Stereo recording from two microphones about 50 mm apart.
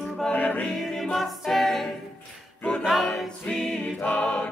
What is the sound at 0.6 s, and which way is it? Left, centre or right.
A capella, centre.